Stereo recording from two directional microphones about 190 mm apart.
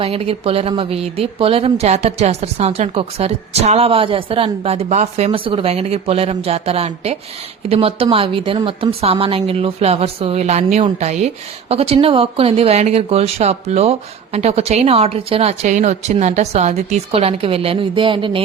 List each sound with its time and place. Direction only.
0.0 s a woman's voice: 30° right (ahead or behind)